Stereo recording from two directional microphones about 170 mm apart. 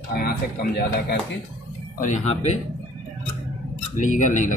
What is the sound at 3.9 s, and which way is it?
Speech, 50° left (ahead or behind).